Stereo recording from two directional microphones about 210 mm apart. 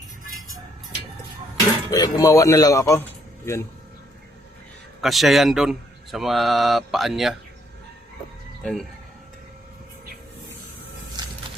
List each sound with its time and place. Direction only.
1.9 s a man's voice: 15° left (ahead or behind)
4.9 s a man's voice: centre (ahead or behind)
8.6 s a man's voice: centre (ahead or behind)
11.2 s a sound: 20° right (ahead or behind)